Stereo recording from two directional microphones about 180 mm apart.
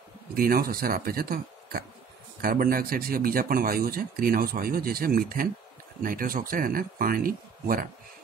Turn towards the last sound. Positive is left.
turn(degrees=-55)  # may be behind; listen again after turning